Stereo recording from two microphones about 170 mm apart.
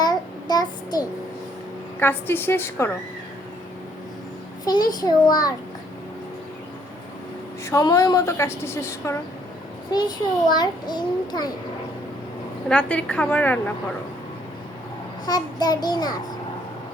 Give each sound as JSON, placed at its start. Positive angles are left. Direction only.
{"t": 0.0, "sound": "child singing", "side_deg": 25}
{"t": 2.0, "sound": "a woman's voice", "side_deg": 10}
{"t": 4.6, "sound": "a child's voice", "side_deg": 25}
{"t": 7.6, "sound": "a woman's voice", "side_deg": 20}
{"t": 10.5, "sound": "a child's voice", "side_deg": 25}
{"t": 12.6, "sound": "a woman's voice", "side_deg": 5}
{"t": 15.3, "sound": "a child's voice", "side_deg": 25}